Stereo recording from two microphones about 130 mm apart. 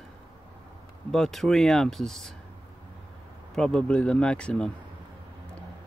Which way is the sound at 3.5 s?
5° left (ahead or behind).